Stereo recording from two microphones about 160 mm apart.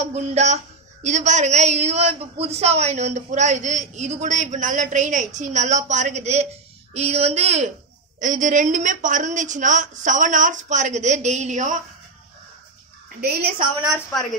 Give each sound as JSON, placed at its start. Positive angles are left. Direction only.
{"t": 0.0, "sound": "a man's voice", "side_deg": -45}
{"t": 13.2, "sound": "a woman's voice", "side_deg": -75}